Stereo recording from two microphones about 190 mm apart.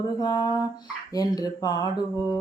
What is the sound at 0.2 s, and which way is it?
Speech, 20° left (ahead or behind).